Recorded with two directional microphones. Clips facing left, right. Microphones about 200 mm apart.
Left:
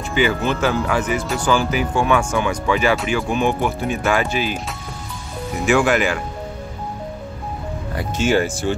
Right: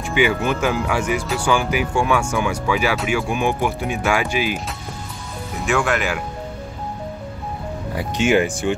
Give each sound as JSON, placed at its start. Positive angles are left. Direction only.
{"t": 0.1, "sound": "speech", "side_deg": -10}
{"t": 5.7, "sound": "speech", "side_deg": 5}